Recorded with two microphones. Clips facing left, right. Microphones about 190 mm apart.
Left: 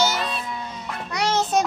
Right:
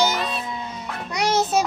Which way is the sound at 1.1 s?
15° right (ahead or behind).